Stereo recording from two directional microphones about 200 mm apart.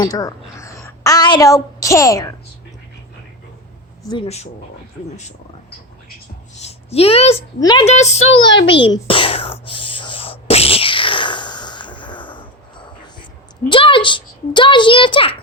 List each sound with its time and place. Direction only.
0.0 s a woman's voice: 15° left (ahead or behind)
4.1 s a child's voice: 30° left (ahead or behind)
6.6 s a sound: 30° left (ahead or behind)
7.6 s a child's voice: 20° left (ahead or behind)
7.9 s a woman's voice: 35° left (ahead or behind)
8.4 s a sound: 25° left (ahead or behind)
13.7 s a child's voice: 25° left (ahead or behind)